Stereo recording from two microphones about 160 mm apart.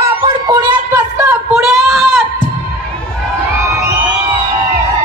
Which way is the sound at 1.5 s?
Centre (ahead or behind).